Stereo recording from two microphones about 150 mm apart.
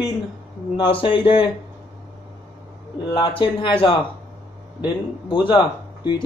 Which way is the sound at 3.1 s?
35° left (ahead or behind).